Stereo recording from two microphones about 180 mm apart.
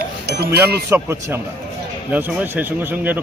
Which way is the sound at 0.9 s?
15° right (ahead or behind).